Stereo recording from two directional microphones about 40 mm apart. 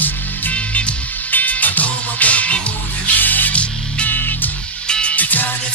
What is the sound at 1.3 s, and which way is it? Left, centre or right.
Music, left.